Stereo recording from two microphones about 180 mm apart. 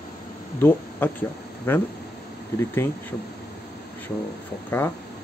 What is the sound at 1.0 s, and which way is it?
Speech, 10° left (ahead or behind).